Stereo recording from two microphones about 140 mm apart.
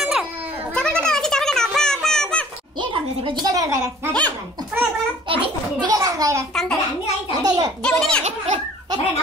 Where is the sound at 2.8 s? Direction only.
35° right (ahead or behind).